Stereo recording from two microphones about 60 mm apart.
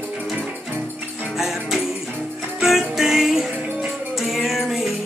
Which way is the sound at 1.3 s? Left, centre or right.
Centre.